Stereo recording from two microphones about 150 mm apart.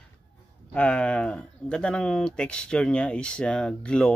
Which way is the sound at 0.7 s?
5° left (ahead or behind).